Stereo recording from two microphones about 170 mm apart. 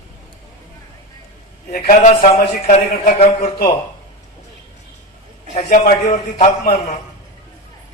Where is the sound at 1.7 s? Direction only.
55° left (ahead or behind).